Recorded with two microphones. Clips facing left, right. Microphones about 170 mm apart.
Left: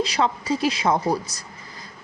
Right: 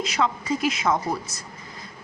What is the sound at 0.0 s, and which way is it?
A woman's voice, 35° left (ahead or behind).